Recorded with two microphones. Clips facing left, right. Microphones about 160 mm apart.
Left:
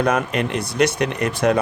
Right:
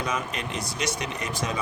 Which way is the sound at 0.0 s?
60° left (ahead or behind).